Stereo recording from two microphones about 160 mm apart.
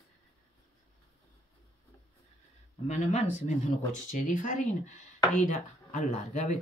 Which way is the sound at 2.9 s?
45° left (ahead or behind).